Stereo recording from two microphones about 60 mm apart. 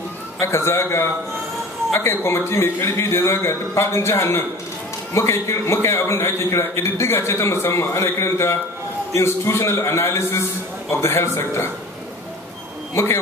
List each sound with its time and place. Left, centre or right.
0.4 s a man's voice: left
12.9 s a man's voice: left